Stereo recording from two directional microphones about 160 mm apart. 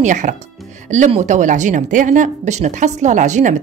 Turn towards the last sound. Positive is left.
turn(degrees=-50)  # may be behind; listen again after turning